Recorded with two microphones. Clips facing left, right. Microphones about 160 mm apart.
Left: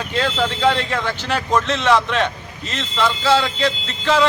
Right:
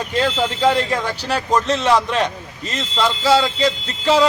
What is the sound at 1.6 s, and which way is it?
Speech, 40° right (ahead or behind).